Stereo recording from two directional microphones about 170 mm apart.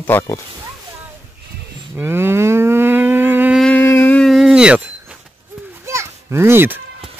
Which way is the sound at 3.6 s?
10° left (ahead or behind).